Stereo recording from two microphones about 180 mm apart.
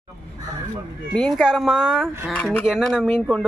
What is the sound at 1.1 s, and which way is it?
Speech, centre (ahead or behind).